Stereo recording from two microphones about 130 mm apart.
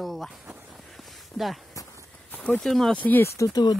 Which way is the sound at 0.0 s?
Centre (ahead or behind).